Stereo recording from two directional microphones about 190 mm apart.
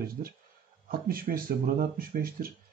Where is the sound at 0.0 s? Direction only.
50° right (ahead or behind).